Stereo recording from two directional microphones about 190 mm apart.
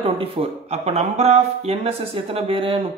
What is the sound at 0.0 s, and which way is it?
Speech, 30° right (ahead or behind).